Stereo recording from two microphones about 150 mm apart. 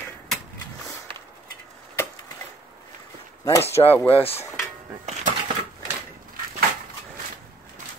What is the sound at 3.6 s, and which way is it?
Speech, 40° left (ahead or behind).